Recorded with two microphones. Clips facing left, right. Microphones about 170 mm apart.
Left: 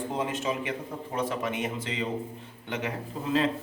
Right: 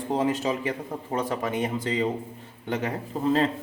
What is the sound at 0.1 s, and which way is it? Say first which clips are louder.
Speech: right 8 dB; 35° right (ahead or behind).